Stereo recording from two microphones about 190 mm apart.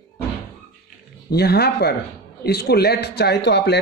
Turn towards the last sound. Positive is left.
turn(degrees=60)  # may be behind; listen again after turning